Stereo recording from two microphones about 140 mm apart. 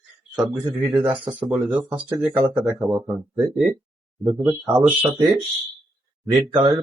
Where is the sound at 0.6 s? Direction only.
20° right (ahead or behind).